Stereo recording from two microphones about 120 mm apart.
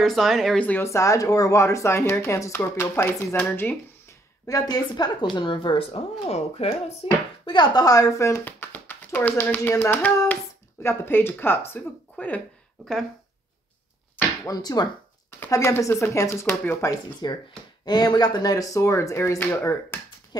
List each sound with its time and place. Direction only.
0.0 s speech: centre (ahead or behind)
0.8 s speech: 25° left (ahead or behind)
4.5 s a woman's voice: 30° left (ahead or behind)
6.2 s speech: 60° left (ahead or behind)
7.4 s speech: 40° left (ahead or behind); by 12.4 s 15° left (ahead or behind)
14.4 s a woman's voice: 30° left (ahead or behind)
15.5 s speech: 25° left (ahead or behind)
17.2 s a woman's voice: 40° left (ahead or behind); by 20.0 s 20° left (ahead or behind)